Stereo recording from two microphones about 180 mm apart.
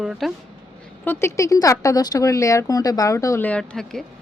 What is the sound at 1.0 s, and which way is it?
Speech, 15° left (ahead or behind).